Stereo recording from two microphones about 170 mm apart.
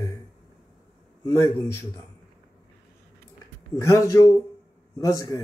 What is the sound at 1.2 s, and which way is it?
Speech, 20° left (ahead or behind).